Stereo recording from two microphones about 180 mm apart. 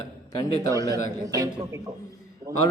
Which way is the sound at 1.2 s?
20° right (ahead or behind).